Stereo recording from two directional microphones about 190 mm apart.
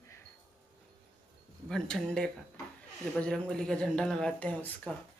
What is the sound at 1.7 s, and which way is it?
A woman's voice, 5° left (ahead or behind).